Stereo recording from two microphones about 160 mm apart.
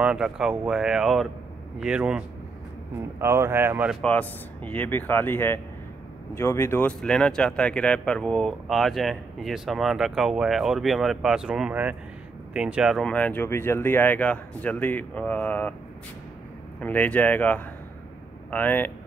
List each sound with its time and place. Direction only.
0.0 s speech: 5° right (ahead or behind)
3.2 s speech: 15° right (ahead or behind)
4.0 s speech: 10° left (ahead or behind)
16.8 s speech: 10° left (ahead or behind)